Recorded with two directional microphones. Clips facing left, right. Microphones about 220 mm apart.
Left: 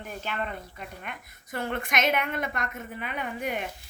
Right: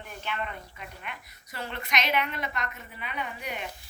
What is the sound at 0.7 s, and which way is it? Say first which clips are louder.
A woman's voice: left 2 dB; 50° left (ahead or behind).